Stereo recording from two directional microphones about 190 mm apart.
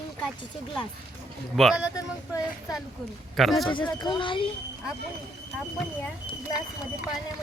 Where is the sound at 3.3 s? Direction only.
Centre (ahead or behind).